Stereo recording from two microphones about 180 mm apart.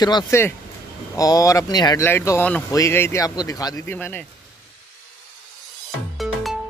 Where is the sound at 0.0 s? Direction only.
20° left (ahead or behind).